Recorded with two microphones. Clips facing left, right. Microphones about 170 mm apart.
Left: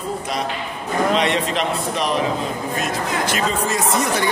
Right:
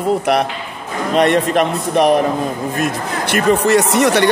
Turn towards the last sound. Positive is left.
turn(degrees=-75)  # may be behind; listen again after turning